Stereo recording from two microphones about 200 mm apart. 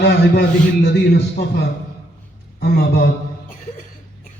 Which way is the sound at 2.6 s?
55° left (ahead or behind).